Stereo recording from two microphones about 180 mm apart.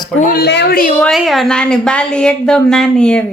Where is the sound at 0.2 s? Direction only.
55° left (ahead or behind).